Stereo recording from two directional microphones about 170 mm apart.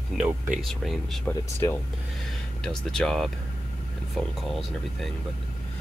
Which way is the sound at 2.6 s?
5° left (ahead or behind).